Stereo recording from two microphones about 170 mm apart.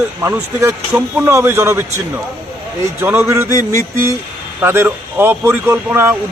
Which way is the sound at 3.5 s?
20° left (ahead or behind).